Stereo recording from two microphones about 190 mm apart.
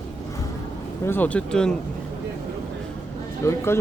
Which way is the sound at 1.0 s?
10° left (ahead or behind).